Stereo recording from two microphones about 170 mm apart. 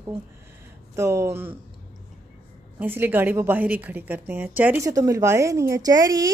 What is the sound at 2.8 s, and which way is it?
A woman's voice, 10° right (ahead or behind).